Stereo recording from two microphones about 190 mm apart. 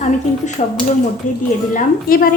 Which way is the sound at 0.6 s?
40° left (ahead or behind).